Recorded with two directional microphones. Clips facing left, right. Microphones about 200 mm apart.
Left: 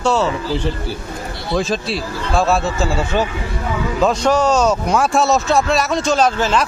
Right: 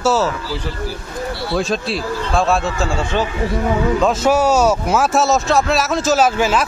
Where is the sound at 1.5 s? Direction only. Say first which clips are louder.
Left 2 dB; centre (ahead or behind).